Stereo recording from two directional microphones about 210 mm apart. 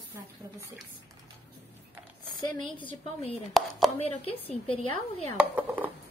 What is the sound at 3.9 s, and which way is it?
Speech, 30° left (ahead or behind).